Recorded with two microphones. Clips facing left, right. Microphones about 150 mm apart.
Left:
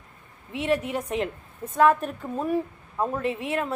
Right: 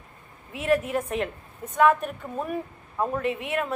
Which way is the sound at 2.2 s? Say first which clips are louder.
Left 2 dB; 5° right (ahead or behind).